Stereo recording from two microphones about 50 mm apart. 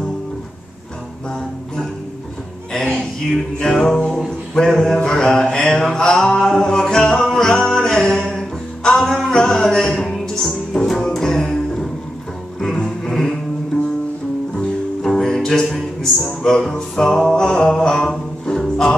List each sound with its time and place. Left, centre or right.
2.7 s a sound: centre
3.6 s mantra: centre
7.8 s music: centre
8.8 s a sound: centre
10.2 s music: centre
14.6 s music: centre